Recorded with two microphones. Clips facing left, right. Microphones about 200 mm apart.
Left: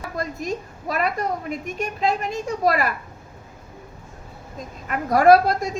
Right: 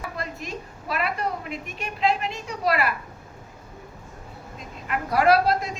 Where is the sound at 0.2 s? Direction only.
45° left (ahead or behind).